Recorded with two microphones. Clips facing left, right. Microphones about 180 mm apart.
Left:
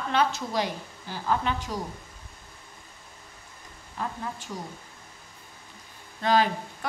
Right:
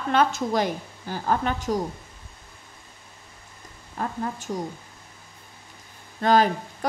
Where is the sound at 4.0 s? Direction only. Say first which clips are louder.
Right 4 dB; 45° right (ahead or behind).